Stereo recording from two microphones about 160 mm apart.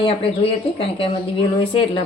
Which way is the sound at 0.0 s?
35° left (ahead or behind).